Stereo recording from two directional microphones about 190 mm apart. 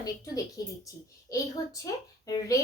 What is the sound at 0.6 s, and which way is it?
Speech, 20° left (ahead or behind).